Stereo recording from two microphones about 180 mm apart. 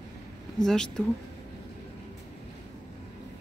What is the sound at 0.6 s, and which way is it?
Speech, 5° left (ahead or behind).